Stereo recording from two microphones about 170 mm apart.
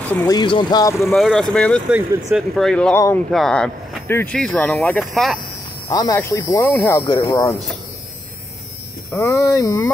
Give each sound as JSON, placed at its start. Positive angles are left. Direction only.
{"t": 0.3, "sound": "speech", "side_deg": 25}
{"t": 1.1, "sound": "speech", "side_deg": 0}
{"t": 1.9, "sound": "speech", "side_deg": -10}
{"t": 2.5, "sound": "speech", "side_deg": 5}
{"t": 5.9, "sound": "speech", "side_deg": 20}
{"t": 9.1, "sound": "speech", "side_deg": 15}